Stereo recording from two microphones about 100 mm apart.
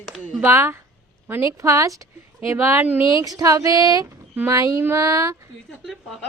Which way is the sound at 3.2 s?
35° right (ahead or behind).